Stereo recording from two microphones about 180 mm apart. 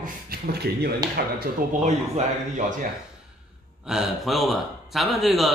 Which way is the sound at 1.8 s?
45° right (ahead or behind).